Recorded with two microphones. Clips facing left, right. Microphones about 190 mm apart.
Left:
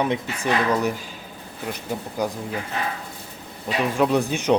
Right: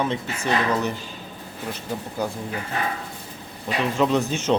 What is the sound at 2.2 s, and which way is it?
Speech, 15° left (ahead or behind).